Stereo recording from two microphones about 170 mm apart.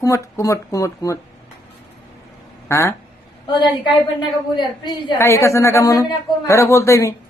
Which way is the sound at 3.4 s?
25° left (ahead or behind).